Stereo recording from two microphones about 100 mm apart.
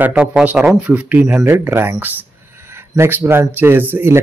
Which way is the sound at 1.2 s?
25° right (ahead or behind).